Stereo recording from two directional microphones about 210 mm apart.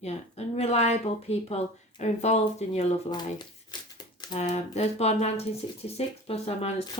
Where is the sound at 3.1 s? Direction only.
20° left (ahead or behind).